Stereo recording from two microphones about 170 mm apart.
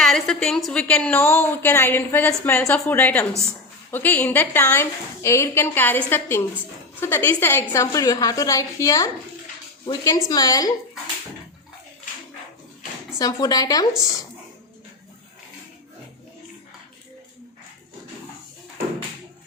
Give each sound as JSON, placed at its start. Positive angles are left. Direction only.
{"t": 0.0, "sound": "a woman's voice", "side_deg": 5}
{"t": 13.1, "sound": "a woman's voice", "side_deg": 20}